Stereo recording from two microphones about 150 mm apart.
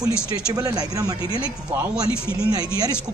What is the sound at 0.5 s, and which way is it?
Speech, 25° right (ahead or behind).